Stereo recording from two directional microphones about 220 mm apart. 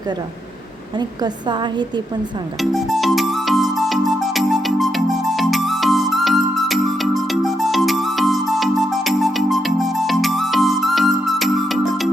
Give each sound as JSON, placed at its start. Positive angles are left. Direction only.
{"t": 0.9, "sound": "a woman's voice", "side_deg": -20}
{"t": 2.6, "sound": "music", "side_deg": 0}